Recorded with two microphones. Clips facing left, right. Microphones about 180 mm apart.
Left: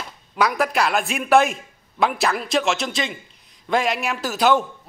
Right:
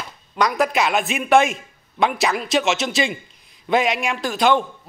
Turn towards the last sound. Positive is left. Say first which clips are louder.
# even
turn(degrees=5)  # may be behind; listen again after turning